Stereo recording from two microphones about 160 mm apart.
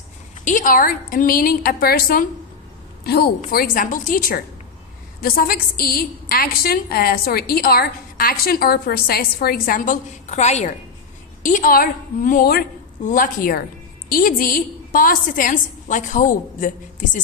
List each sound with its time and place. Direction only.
0.4 s a woman's voice: 55° left (ahead or behind)
3.0 s a woman's voice: 85° left
3.5 s a woman's voice: 65° left (ahead or behind); by 10.8 s 45° left (ahead or behind)
11.4 s a woman's voice: 60° left (ahead or behind)
13.1 s a woman's voice: 60° left (ahead or behind)